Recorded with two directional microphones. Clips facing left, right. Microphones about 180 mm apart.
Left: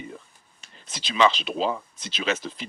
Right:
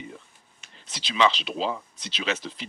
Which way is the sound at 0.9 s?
50° left (ahead or behind).